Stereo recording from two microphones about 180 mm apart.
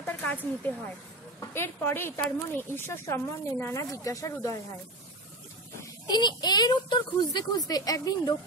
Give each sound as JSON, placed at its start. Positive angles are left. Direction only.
{"t": 0.0, "sound": "snake", "side_deg": 10}
{"t": 1.5, "sound": "speech", "side_deg": 15}
{"t": 5.8, "sound": "speech", "side_deg": 25}